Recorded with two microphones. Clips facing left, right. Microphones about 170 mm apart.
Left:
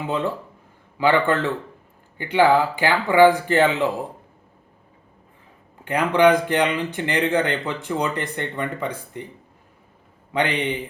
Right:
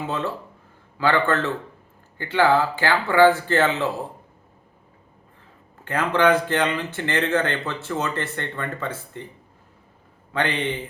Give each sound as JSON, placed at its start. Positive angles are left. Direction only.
{"t": 0.9, "sound": "a man's voice", "side_deg": 15}
{"t": 5.8, "sound": "a man's voice", "side_deg": 15}
{"t": 10.3, "sound": "a man's voice", "side_deg": 15}